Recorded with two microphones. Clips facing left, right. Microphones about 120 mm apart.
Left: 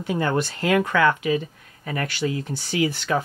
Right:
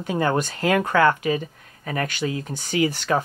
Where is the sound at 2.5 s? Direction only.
50° right (ahead or behind).